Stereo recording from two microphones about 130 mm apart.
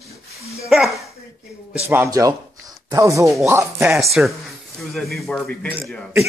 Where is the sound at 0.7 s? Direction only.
5° right (ahead or behind).